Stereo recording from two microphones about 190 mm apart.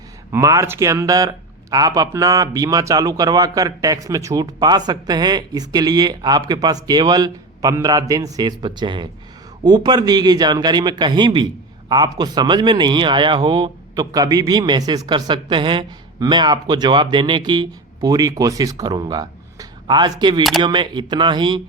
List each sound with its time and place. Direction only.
0.3 s speech: 15° right (ahead or behind)